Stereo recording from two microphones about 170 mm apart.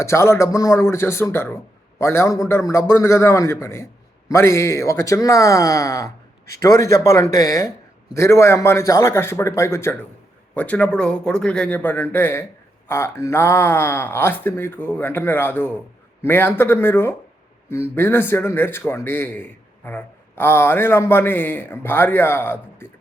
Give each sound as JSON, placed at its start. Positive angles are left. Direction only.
{"t": 0.0, "sound": "a man's voice", "side_deg": 15}